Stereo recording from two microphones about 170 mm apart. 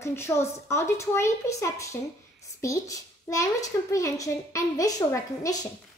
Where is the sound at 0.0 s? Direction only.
15° left (ahead or behind).